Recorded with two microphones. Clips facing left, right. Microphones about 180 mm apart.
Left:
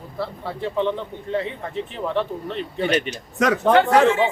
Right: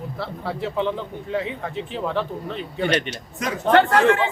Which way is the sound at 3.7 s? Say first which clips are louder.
Right 1 dB; 60° right (ahead or behind).